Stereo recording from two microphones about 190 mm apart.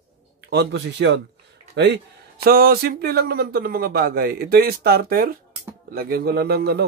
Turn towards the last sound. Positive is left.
turn(degrees=-55)  # may be behind; listen again after turning